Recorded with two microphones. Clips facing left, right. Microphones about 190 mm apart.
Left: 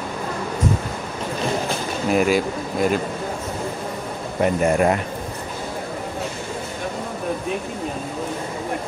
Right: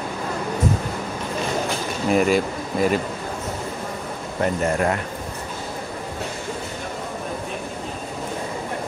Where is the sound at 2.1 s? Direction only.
Centre (ahead or behind).